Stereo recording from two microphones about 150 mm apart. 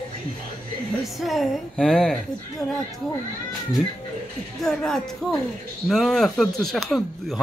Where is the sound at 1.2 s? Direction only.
Centre (ahead or behind).